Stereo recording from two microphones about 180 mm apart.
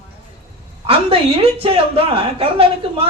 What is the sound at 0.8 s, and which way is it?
A woman's voice, 30° right (ahead or behind).